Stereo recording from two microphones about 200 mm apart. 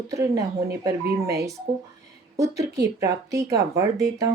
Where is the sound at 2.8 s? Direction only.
15° right (ahead or behind).